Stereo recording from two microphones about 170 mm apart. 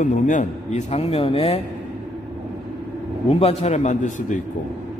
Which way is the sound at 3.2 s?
35° left (ahead or behind).